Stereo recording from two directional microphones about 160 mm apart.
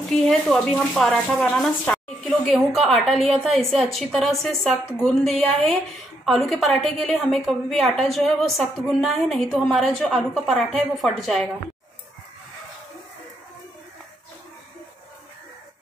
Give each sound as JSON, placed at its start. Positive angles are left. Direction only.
{"t": 0.1, "sound": "speech", "side_deg": 0}